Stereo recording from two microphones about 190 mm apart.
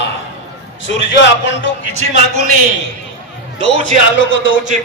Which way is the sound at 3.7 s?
85° left.